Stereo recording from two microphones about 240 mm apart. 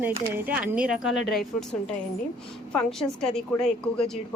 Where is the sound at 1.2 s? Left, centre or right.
Left.